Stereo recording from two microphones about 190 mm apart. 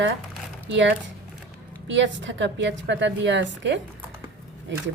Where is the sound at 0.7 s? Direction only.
70° right (ahead or behind).